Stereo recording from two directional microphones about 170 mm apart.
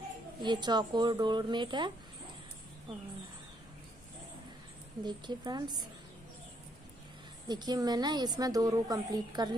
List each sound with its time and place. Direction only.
0.4 s a woman's voice: 25° right (ahead or behind)
5.0 s a woman's voice: 25° right (ahead or behind)
7.4 s a woman's voice: 25° right (ahead or behind)